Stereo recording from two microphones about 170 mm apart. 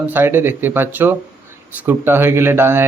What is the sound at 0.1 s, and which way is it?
Speech, 10° right (ahead or behind).